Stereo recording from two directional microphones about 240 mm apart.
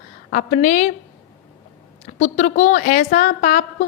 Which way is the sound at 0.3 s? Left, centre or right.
Left.